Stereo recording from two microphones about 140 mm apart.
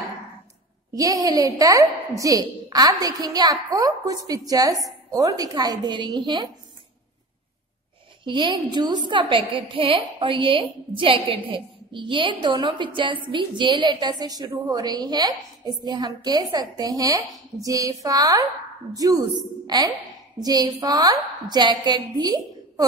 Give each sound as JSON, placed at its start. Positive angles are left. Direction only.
{"t": 0.9, "sound": "a woman's voice", "side_deg": -25}
{"t": 8.2, "sound": "a woman's voice", "side_deg": -35}